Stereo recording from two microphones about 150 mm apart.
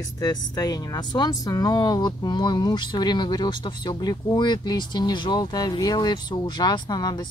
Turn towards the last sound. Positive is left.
turn(degrees=25)  # may be behind; listen again after turning